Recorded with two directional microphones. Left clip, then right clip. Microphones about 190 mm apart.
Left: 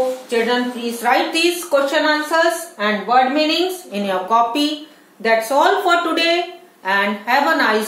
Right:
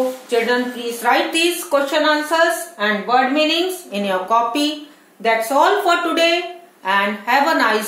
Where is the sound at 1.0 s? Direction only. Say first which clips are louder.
Even; 20° right (ahead or behind).